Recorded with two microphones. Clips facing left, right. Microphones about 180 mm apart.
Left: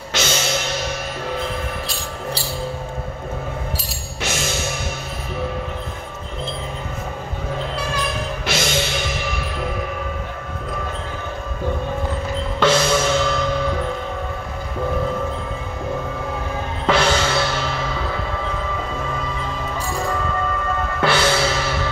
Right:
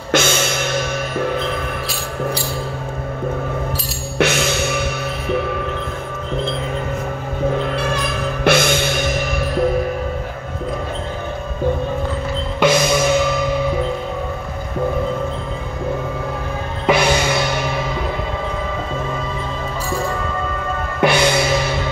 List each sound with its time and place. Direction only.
0.1 s music: 55° right (ahead or behind)
4.2 s music: 65° right (ahead or behind)
8.5 s music: 55° right (ahead or behind)
12.5 s music: 15° right (ahead or behind)
16.8 s music: 15° right (ahead or behind)
21.0 s music: 15° right (ahead or behind)